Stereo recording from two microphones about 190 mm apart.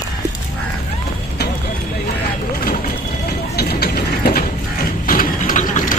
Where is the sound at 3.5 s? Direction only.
55° left (ahead or behind).